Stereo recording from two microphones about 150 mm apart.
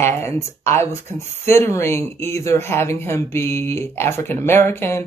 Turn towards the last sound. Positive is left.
turn(degrees=15)  # may be behind; listen again after turning